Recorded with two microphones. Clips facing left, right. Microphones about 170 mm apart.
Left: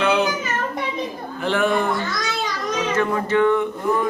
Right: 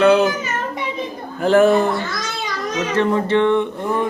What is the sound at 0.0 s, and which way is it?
Child singing, 45° right (ahead or behind).